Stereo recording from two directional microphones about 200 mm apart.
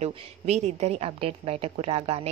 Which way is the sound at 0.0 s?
35° right (ahead or behind).